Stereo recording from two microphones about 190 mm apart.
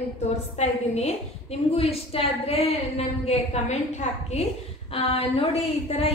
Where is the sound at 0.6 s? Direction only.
35° left (ahead or behind).